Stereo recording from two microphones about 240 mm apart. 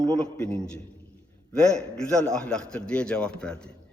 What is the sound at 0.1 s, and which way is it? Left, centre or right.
A man's voice, centre.